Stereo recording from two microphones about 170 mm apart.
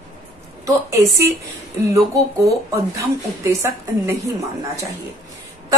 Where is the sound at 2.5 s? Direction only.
20° right (ahead or behind).